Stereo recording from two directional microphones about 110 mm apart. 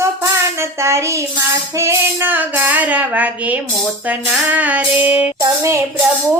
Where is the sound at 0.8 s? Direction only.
25° right (ahead or behind).